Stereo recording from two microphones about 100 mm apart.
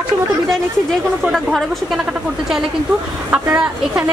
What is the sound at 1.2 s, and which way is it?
Speech, centre (ahead or behind).